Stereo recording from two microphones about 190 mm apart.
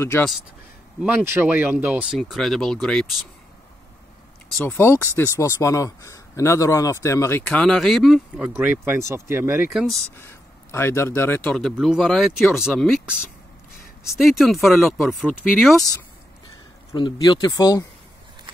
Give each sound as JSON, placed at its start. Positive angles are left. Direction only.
{"t": 1.0, "sound": "speech", "side_deg": -10}
{"t": 4.6, "sound": "speech", "side_deg": 10}
{"t": 9.7, "sound": "speech", "side_deg": 0}
{"t": 10.1, "sound": "speech", "side_deg": 15}
{"t": 14.1, "sound": "speech", "side_deg": 0}
{"t": 16.9, "sound": "speech", "side_deg": 20}